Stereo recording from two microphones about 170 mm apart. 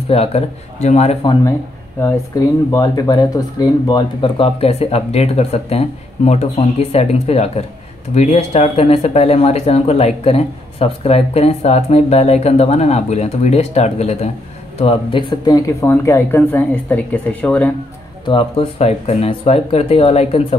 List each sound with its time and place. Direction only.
0.1 s speech: 35° left (ahead or behind)
2.0 s speech: 15° left (ahead or behind)
18.2 s speech: 30° left (ahead or behind)